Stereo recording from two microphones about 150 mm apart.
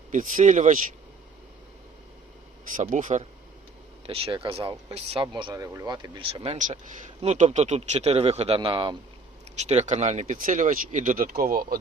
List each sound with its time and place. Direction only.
0.1 s speech: 55° right (ahead or behind)
2.7 s speech: 60° right (ahead or behind)
4.0 s speech: 40° right (ahead or behind)
9.6 s speech: 50° right (ahead or behind); by 11.8 s 75° right (ahead or behind)